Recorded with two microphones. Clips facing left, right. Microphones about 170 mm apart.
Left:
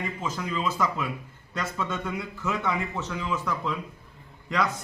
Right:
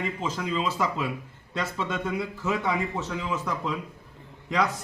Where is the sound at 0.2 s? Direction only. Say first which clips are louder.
Even; 25° right (ahead or behind).